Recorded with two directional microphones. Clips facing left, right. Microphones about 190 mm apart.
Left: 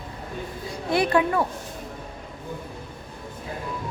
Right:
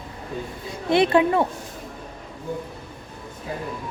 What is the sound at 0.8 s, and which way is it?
Speech, 25° right (ahead or behind).